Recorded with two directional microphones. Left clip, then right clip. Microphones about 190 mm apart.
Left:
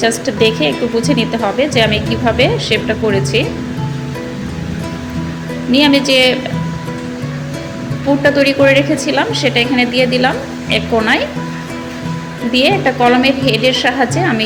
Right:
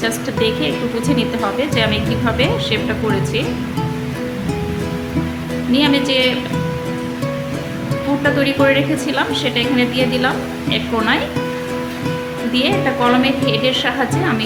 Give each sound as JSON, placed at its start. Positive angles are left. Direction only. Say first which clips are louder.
{"t": 0.0, "sound": "a woman's voice", "louder": "left 5 dB", "side_deg": 10}
{"t": 5.7, "sound": "a woman's voice", "louder": "left 5 dB", "side_deg": 15}
{"t": 8.2, "sound": "a woman's voice", "louder": "left 5 dB", "side_deg": 10}
{"t": 12.5, "sound": "a woman's voice", "louder": "left 5 dB", "side_deg": 10}